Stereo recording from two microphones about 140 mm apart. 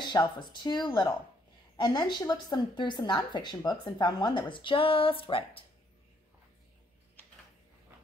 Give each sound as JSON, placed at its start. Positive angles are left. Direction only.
{"t": 0.0, "sound": "speech", "side_deg": 30}